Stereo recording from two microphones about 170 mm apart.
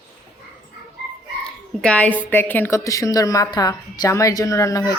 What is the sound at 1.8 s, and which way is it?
A woman's voice, 10° left (ahead or behind).